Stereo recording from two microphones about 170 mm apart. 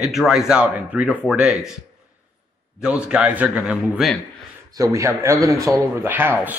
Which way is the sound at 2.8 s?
5° right (ahead or behind).